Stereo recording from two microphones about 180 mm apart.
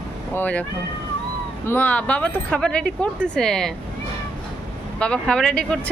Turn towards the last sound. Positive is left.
turn(degrees=5)  # may be behind; listen again after turning